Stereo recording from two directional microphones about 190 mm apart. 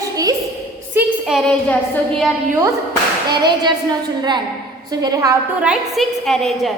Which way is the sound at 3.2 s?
20° right (ahead or behind).